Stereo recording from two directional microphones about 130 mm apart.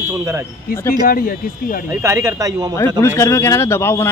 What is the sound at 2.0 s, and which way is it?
Speech, 20° right (ahead or behind).